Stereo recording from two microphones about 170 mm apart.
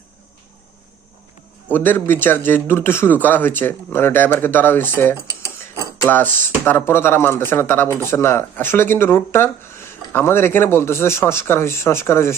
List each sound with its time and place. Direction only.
1.7 s speech: 10° left (ahead or behind)
5.1 s dishes: 20° right (ahead or behind)
6.1 s speech: 10° left (ahead or behind)